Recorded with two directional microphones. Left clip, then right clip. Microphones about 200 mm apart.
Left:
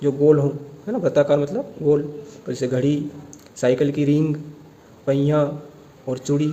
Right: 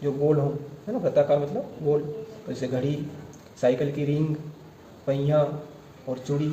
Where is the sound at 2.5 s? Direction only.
60° left (ahead or behind).